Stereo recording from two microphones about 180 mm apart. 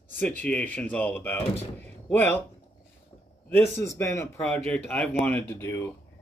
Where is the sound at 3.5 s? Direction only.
15° left (ahead or behind).